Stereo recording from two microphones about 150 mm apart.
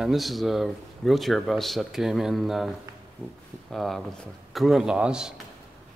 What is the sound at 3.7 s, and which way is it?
Speech, centre (ahead or behind).